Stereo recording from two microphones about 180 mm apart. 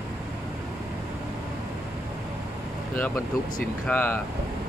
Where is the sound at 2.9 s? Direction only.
10° left (ahead or behind).